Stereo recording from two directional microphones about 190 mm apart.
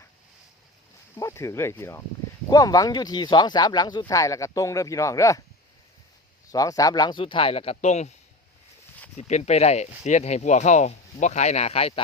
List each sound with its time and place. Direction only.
1.1 s speech: 15° left (ahead or behind)
6.5 s speech: 20° left (ahead or behind); by 8.1 s 35° left (ahead or behind)
9.1 s speech: 35° left (ahead or behind)